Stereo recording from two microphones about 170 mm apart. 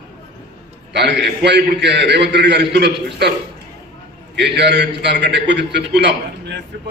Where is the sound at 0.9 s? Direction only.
80° right.